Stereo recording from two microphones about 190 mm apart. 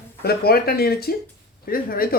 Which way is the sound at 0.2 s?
55° left (ahead or behind).